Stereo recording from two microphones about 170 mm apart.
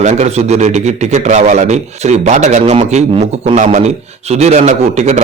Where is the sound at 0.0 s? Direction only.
40° right (ahead or behind).